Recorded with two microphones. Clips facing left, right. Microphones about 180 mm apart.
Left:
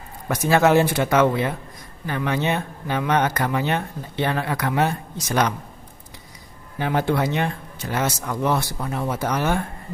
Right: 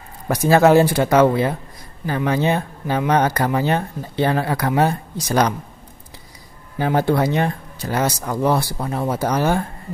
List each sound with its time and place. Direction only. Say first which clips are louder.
0.3 s speech: right 4 dB; 35° right (ahead or behind)
6.8 s speech: right 4 dB; 35° right (ahead or behind)